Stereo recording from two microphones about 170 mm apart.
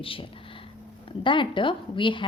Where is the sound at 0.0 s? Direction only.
30° left (ahead or behind).